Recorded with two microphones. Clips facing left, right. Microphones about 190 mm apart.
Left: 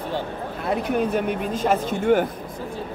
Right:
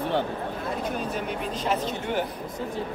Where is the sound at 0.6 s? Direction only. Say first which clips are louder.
Left 9 dB; 65° left (ahead or behind).